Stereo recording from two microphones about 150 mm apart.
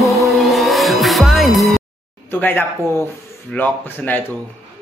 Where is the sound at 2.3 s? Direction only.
10° left (ahead or behind).